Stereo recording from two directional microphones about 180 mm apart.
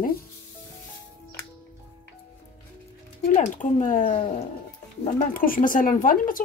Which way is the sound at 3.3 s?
45° left (ahead or behind).